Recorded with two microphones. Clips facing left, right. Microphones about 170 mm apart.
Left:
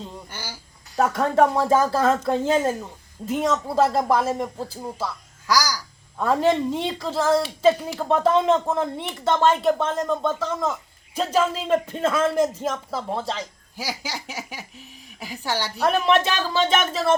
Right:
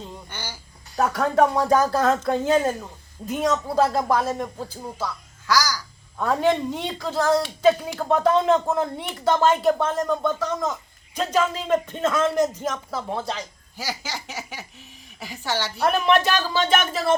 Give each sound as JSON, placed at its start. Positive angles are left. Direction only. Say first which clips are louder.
{"t": 0.9, "sound": "speech", "louder": "left 1 dB", "side_deg": 0}
{"t": 6.1, "sound": "speech", "louder": "left 1 dB", "side_deg": 0}
{"t": 9.8, "sound": "speech", "louder": "right 1 dB", "side_deg": 20}
{"t": 10.4, "sound": "speech", "louder": "even", "side_deg": 5}
{"t": 15.9, "sound": "speech", "louder": "even", "side_deg": 0}